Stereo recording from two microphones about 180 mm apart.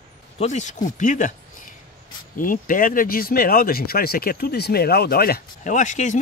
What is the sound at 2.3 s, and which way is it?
Speech, 50° left (ahead or behind).